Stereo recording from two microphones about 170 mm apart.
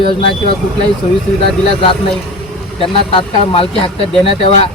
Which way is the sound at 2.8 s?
30° left (ahead or behind).